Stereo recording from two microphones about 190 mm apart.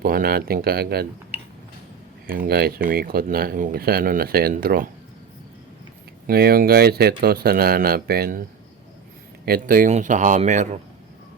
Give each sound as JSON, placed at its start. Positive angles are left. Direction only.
{"t": 0.0, "sound": "speech", "side_deg": -50}
{"t": 2.2, "sound": "speech", "side_deg": -50}
{"t": 6.2, "sound": "speech", "side_deg": -55}
{"t": 9.5, "sound": "speech", "side_deg": -45}